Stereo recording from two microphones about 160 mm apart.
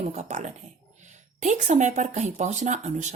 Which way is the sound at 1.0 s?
50° right (ahead or behind).